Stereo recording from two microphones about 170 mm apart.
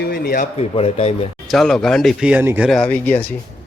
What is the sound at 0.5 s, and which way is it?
Speech, 35° left (ahead or behind).